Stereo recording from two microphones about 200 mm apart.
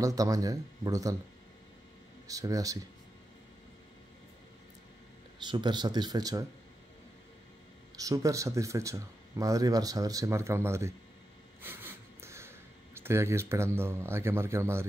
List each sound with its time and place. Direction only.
0.0 s speech: 15° right (ahead or behind)
2.2 s speech: 15° right (ahead or behind)
5.4 s speech: 20° right (ahead or behind)
7.9 s speech: 15° right (ahead or behind)
11.6 s a sound: 10° right (ahead or behind)